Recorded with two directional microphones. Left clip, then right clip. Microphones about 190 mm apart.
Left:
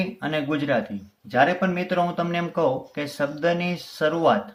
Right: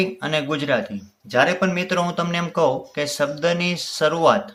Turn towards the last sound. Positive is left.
turn(degrees=-20)  # may be behind; listen again after turning